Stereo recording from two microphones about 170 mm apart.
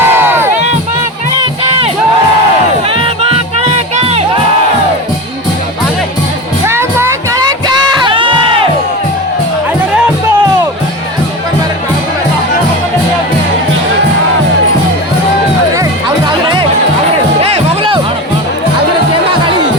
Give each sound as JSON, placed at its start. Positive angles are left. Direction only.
{"t": 0.0, "sound": "crowd", "side_deg": -10}
{"t": 1.4, "sound": "music", "side_deg": -35}
{"t": 2.9, "sound": "music", "side_deg": -30}
{"t": 6.7, "sound": "music", "side_deg": -15}
{"t": 8.0, "sound": "crowd", "side_deg": -30}
{"t": 15.7, "sound": "music", "side_deg": -25}